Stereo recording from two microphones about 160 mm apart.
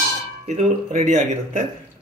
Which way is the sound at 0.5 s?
45° right (ahead or behind).